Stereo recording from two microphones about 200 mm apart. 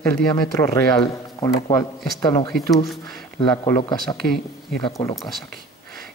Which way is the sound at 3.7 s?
20° left (ahead or behind).